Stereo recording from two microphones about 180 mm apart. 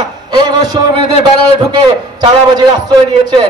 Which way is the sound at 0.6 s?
20° right (ahead or behind).